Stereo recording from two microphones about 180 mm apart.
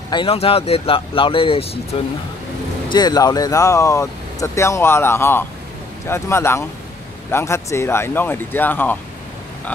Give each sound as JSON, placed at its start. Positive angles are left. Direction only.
{"t": 0.1, "sound": "speech", "side_deg": 30}
{"t": 2.9, "sound": "speech", "side_deg": 25}